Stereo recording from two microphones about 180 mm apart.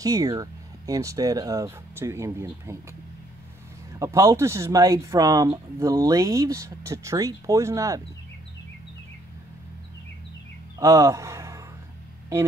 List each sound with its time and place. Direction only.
0.0 s speech: 20° right (ahead or behind)
4.0 s speech: 15° right (ahead or behind)
10.8 s speech: 15° right (ahead or behind)